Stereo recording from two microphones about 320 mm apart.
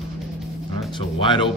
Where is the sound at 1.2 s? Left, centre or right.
Centre.